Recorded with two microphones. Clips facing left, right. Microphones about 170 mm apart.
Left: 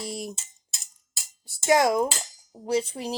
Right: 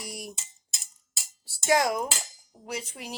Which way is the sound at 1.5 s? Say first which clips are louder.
Left 4 dB; 20° left (ahead or behind).